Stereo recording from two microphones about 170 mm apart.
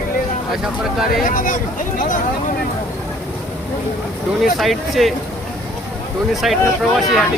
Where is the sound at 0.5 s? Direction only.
5° right (ahead or behind).